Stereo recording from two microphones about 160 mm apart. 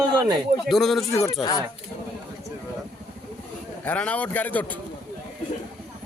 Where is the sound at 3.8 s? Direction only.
10° left (ahead or behind).